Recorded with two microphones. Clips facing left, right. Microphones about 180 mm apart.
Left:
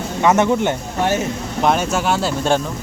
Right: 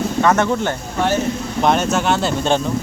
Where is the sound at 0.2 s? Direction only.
15° left (ahead or behind).